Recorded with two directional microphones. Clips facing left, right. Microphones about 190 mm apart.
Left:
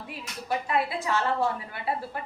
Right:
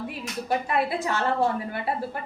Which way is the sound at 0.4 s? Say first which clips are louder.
Right 2 dB; 50° right (ahead or behind).